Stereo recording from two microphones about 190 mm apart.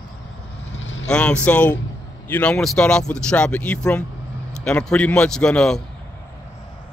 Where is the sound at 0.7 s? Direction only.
75° left (ahead or behind).